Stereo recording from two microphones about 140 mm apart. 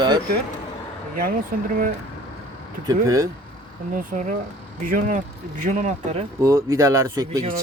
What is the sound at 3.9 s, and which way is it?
Speech, 70° right (ahead or behind).